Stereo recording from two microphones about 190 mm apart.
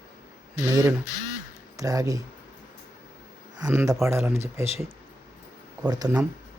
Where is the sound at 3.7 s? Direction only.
15° right (ahead or behind).